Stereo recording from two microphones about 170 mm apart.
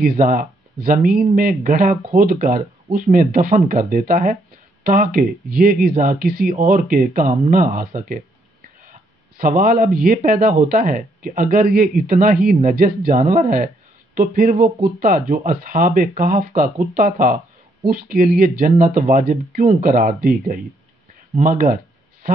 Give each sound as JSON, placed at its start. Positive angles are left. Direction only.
{"t": 0.0, "sound": "speech", "side_deg": -50}
{"t": 9.4, "sound": "speech", "side_deg": -55}